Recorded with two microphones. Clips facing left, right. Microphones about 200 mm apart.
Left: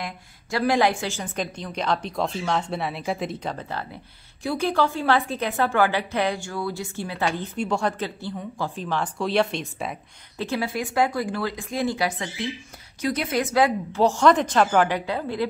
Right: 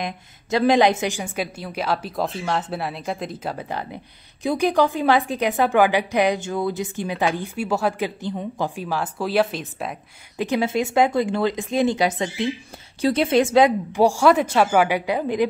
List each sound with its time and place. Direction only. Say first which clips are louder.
0.0 s a woman's voice: right 5 dB; 20° right (ahead or behind); by 3.5 s centre (ahead or behind)
3.5 s a woman's voice: right 3 dB; 15° right (ahead or behind)
8.2 s a woman's voice: right 4 dB; 20° right (ahead or behind); by 9.9 s centre (ahead or behind)
10.3 s a woman's voice: right 5 dB; 15° right (ahead or behind)